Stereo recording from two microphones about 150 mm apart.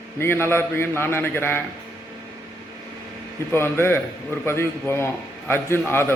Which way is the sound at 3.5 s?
15° left (ahead or behind).